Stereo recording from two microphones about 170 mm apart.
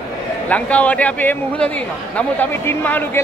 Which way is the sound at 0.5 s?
10° left (ahead or behind).